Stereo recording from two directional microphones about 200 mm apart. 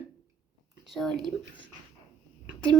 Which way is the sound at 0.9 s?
Centre (ahead or behind).